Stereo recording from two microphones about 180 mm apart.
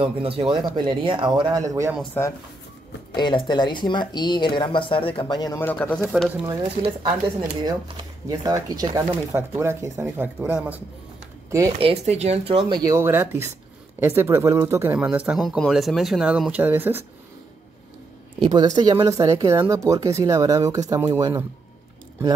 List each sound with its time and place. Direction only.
0.0 s speech: 30° right (ahead or behind); by 2.0 s 15° right (ahead or behind)
3.2 s speech: 25° left (ahead or behind); by 6.2 s 10° left (ahead or behind)
6.4 s speech: 20° right (ahead or behind)
11.8 s speech: 35° right (ahead or behind); by 17.0 s 10° right (ahead or behind)
18.4 s speech: 25° right (ahead or behind)